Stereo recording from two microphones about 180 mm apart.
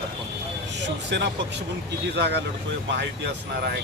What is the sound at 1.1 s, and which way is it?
Speech, 75° right (ahead or behind).